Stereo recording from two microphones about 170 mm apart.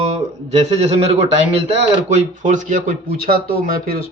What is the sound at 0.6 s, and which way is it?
A man's voice, 35° right (ahead or behind).